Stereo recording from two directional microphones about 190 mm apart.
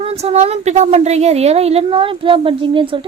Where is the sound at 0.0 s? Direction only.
30° right (ahead or behind).